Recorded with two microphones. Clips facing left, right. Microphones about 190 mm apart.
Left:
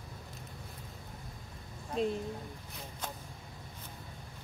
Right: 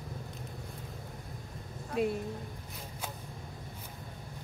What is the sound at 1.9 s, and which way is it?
Speech, 10° right (ahead or behind).